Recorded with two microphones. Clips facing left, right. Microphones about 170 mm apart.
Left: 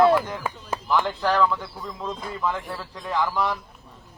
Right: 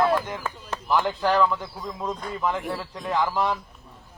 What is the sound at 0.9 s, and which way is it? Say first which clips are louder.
A man's voice: right 1 dB; 15° right (ahead or behind).